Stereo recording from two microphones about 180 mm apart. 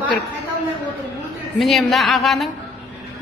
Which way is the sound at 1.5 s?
Centre (ahead or behind).